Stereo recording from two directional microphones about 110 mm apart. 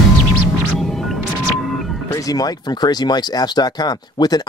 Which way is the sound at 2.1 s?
35° left (ahead or behind).